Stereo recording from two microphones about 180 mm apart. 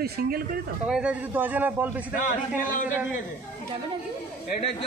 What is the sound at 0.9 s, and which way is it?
A man's voice, 5° right (ahead or behind).